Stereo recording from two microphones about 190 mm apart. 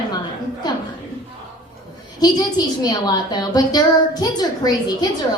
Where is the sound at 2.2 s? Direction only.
20° left (ahead or behind).